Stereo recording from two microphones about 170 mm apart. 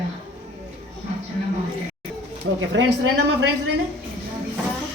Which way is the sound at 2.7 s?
90° right.